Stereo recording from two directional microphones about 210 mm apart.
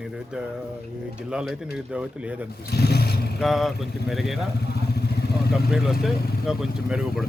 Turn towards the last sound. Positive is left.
turn(degrees=0)  # may be behind; listen again after turning